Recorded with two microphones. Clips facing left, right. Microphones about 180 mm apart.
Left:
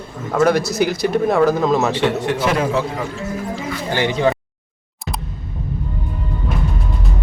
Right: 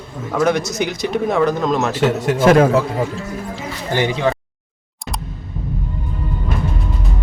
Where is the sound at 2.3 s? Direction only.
50° right (ahead or behind).